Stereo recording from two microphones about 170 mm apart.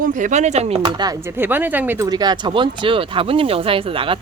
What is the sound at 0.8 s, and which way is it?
Speech, 25° right (ahead or behind).